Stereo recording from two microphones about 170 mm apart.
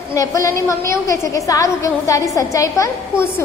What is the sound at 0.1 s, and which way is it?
A woman's voice, 20° left (ahead or behind).